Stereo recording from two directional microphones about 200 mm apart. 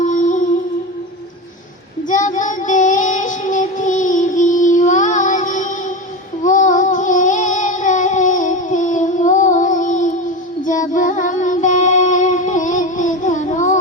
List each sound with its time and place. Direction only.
0.0 s music: 40° left (ahead or behind)
2.0 s child singing: 40° left (ahead or behind)
10.7 s music: 40° left (ahead or behind)